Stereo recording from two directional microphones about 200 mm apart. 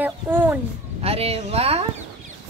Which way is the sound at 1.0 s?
30° right (ahead or behind).